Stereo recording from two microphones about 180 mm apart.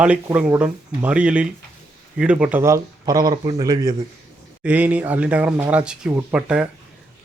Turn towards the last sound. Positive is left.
turn(degrees=-5)  # may be behind; listen again after turning